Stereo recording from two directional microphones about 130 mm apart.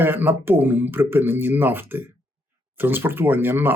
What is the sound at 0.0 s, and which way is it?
A man's voice, 15° right (ahead or behind).